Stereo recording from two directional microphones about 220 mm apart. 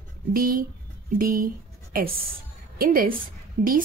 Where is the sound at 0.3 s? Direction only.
40° right (ahead or behind).